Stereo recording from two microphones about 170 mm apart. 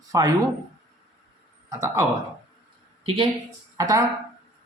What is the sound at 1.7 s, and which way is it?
Speech, 20° right (ahead or behind).